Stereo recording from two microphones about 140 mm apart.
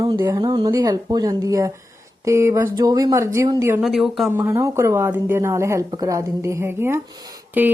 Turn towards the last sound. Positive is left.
turn(degrees=-15)  # may be behind; listen again after turning